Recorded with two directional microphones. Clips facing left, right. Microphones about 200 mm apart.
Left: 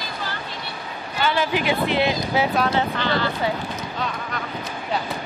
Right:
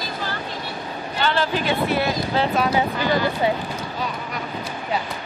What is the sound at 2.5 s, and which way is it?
Speech, 10° right (ahead or behind).